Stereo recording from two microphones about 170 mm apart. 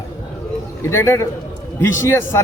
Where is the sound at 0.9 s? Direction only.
15° left (ahead or behind).